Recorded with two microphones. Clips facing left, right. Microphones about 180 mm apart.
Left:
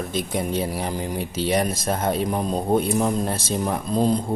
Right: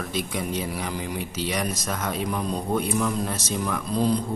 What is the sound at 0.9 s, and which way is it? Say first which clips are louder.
Speech: left 3 dB; 45° left (ahead or behind).